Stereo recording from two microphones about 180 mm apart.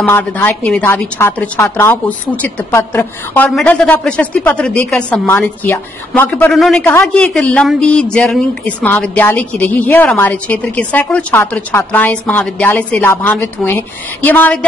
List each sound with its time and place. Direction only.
0.0 s a woman's voice: 10° left (ahead or behind)
6.9 s a woman's voice: 15° left (ahead or behind)
7.3 s a woman's voice: 5° left (ahead or behind)